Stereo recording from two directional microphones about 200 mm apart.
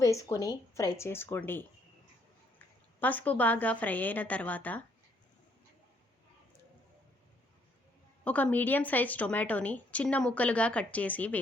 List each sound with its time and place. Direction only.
0.0 s a woman's voice: 15° left (ahead or behind)
8.2 s a woman's voice: 5° left (ahead or behind)